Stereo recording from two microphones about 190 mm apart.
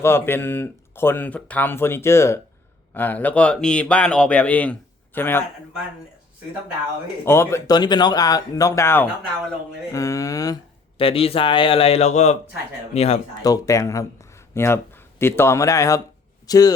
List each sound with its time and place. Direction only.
0.0 s speech: 10° left (ahead or behind)
7.3 s speech: 15° left (ahead or behind)
10.9 s speech: 30° left (ahead or behind)
13.4 s speech: 20° left (ahead or behind)